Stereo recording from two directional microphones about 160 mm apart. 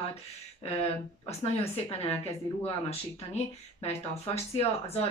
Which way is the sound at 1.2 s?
40° left (ahead or behind).